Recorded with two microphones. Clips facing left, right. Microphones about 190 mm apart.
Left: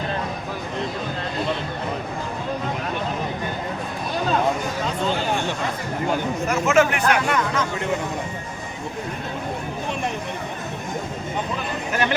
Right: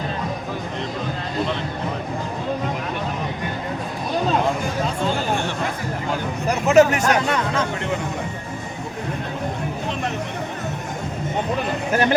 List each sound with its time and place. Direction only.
6.5 s speech: 35° right (ahead or behind)
11.9 s speech: 40° right (ahead or behind)